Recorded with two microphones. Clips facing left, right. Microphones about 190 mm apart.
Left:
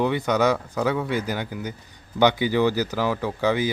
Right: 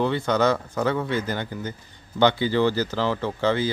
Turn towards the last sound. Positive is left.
turn(degrees=15)  # may be behind; listen again after turning